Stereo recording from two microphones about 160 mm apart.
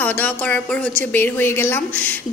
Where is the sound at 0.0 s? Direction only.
10° left (ahead or behind).